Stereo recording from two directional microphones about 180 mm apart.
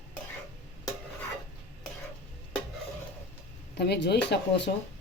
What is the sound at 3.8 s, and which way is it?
Speech, 70° left (ahead or behind).